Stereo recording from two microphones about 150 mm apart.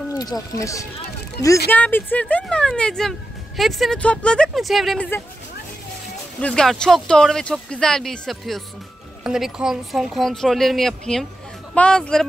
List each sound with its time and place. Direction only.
0.2 s speech: 25° left (ahead or behind); by 5.0 s centre (ahead or behind)
6.4 s speech: 5° left (ahead or behind)